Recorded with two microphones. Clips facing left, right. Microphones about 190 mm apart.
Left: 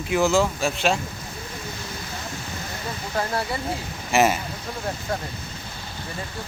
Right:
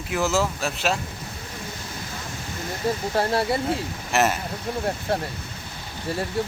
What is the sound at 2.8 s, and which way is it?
Speech, 30° right (ahead or behind).